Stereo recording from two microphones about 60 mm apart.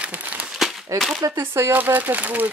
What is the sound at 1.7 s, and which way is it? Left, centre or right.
Speech, right.